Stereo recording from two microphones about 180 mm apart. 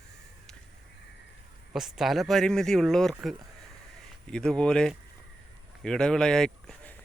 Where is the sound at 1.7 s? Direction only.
Centre (ahead or behind).